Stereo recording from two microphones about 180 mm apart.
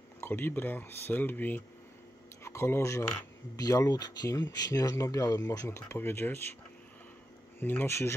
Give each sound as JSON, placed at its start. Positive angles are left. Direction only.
{"t": 0.2, "sound": "speech", "side_deg": 10}
{"t": 7.6, "sound": "speech", "side_deg": 10}